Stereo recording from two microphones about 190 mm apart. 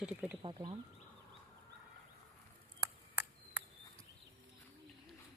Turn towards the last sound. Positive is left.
turn(degrees=-10)  # may be behind; listen again after turning